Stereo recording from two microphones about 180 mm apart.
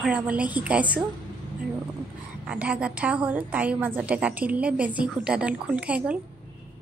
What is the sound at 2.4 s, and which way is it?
A woman's voice, 5° right (ahead or behind).